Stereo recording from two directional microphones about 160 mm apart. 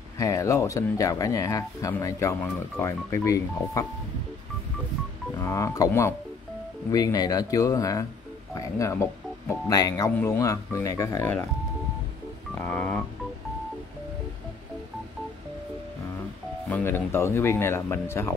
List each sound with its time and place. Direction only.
0.2 s speech: 20° left (ahead or behind)
5.4 s speech: 20° left (ahead or behind)
12.5 s telephone dialing: 10° left (ahead or behind)
16.6 s speech: 10° left (ahead or behind)